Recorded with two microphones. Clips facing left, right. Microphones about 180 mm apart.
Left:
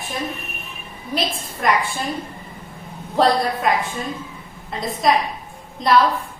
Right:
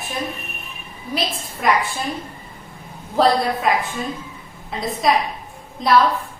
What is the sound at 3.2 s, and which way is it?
A woman's voice, centre (ahead or behind).